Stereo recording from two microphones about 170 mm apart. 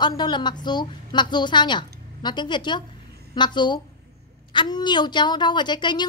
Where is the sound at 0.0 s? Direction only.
25° left (ahead or behind).